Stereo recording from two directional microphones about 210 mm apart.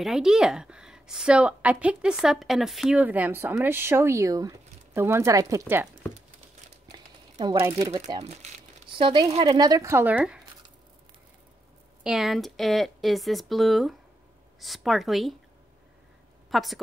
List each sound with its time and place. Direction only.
0.0 s a woman's voice: 5° right (ahead or behind)
6.9 s crumpling: 25° right (ahead or behind)
7.6 s speech: 15° right (ahead or behind)
8.3 s speech: 35° right (ahead or behind); by 10.4 s 5° right (ahead or behind)
12.0 s a woman's voice: centre (ahead or behind)
16.4 s a woman's voice: centre (ahead or behind)